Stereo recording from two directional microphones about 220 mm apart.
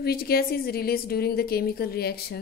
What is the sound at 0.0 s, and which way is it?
A woman's voice, 45° left (ahead or behind).